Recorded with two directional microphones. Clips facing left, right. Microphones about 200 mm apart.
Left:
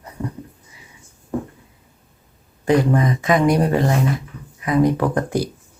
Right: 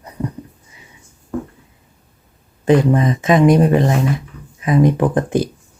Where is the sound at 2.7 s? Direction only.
25° right (ahead or behind).